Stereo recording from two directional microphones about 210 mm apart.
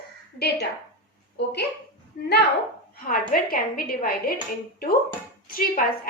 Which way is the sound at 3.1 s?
40° left (ahead or behind).